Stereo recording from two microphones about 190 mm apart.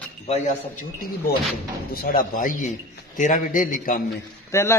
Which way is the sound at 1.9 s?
50° left (ahead or behind).